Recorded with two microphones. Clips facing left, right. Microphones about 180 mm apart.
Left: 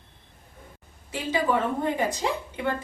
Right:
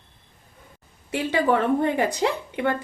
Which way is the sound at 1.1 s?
65° right (ahead or behind).